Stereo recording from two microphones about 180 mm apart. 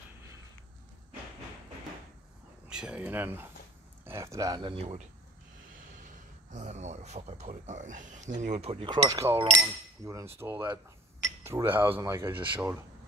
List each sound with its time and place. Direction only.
2.7 s speech: 5° right (ahead or behind)